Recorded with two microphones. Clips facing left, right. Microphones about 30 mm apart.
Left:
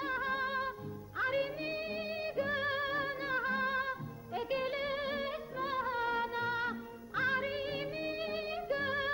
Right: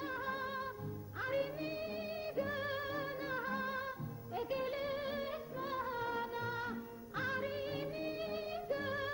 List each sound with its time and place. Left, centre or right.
0.0 s music: left